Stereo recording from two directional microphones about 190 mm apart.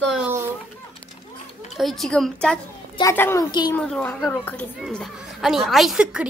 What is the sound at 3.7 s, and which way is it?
A woman's voice, 5° left (ahead or behind).